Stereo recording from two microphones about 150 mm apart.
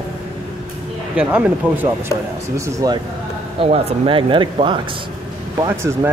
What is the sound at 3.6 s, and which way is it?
Speech, 40° right (ahead or behind).